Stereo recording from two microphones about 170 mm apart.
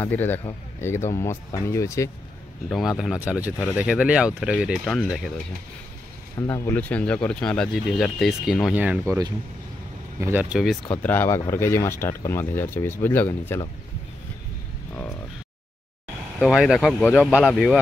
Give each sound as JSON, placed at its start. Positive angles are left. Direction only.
{"t": 0.0, "sound": "speech", "side_deg": 10}
{"t": 3.0, "sound": "speech", "side_deg": -5}
{"t": 4.8, "sound": "speech", "side_deg": 5}
{"t": 6.3, "sound": "speech", "side_deg": 15}
{"t": 10.2, "sound": "speech", "side_deg": -10}
{"t": 10.9, "sound": "speech", "side_deg": 10}
{"t": 16.3, "sound": "speech", "side_deg": 0}